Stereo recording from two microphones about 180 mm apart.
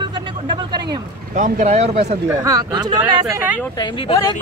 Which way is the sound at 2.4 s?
20° right (ahead or behind).